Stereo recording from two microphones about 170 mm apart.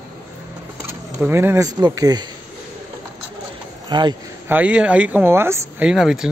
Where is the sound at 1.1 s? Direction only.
15° right (ahead or behind).